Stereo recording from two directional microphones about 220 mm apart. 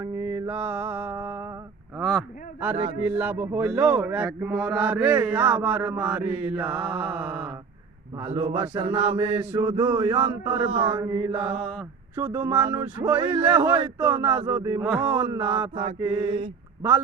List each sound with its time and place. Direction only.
0.0 s mantra: 10° right (ahead or behind)
2.0 s a sound: centre (ahead or behind)
3.2 s mantra: 5° right (ahead or behind)
8.2 s mantra: 25° right (ahead or behind); by 15.2 s 5° right (ahead or behind)
15.2 s mantra: 15° right (ahead or behind)
15.7 s mantra: 20° right (ahead or behind)